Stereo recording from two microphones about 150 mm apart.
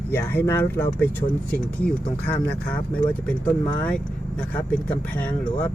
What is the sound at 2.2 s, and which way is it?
Speech, 10° left (ahead or behind).